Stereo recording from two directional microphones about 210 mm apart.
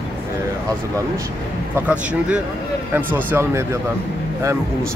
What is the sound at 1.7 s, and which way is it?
Speech, 5° right (ahead or behind).